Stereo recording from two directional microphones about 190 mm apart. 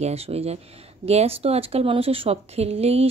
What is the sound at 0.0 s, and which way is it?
Speech, 35° right (ahead or behind).